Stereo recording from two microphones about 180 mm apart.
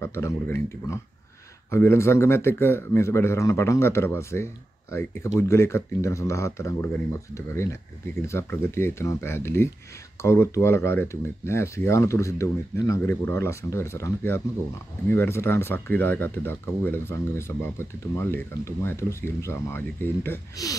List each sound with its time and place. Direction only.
0.0 s speech: 15° left (ahead or behind)